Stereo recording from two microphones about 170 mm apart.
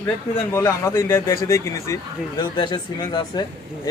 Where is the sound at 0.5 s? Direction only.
15° left (ahead or behind).